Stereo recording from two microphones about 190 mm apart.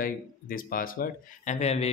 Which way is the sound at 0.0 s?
50° left (ahead or behind).